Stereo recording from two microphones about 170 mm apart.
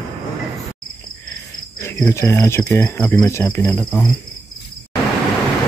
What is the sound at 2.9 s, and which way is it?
Speech, 5° left (ahead or behind).